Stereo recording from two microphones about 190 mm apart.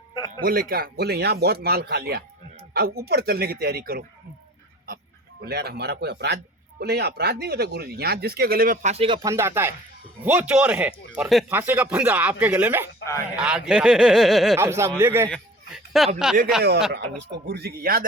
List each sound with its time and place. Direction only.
0.4 s a man's voice: 50° right (ahead or behind)
5.5 s a man's voice: 60° right (ahead or behind); by 9.3 s 25° right (ahead or behind)
9.3 s speech: 15° right (ahead or behind)
14.6 s speech: 15° right (ahead or behind)
15.3 s a sound: centre (ahead or behind)
16.1 s speech: 5° right (ahead or behind)
16.9 s a man's voice: 60° right (ahead or behind)